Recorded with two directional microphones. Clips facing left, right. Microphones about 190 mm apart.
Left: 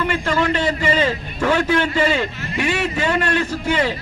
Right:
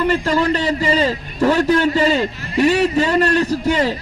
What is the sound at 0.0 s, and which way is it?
A man's voice, 35° right (ahead or behind).